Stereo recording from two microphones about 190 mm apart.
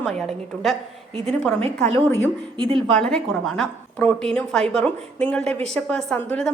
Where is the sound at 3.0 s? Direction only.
5° left (ahead or behind).